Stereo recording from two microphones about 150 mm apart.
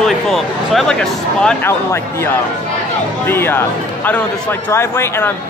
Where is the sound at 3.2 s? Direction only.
15° left (ahead or behind).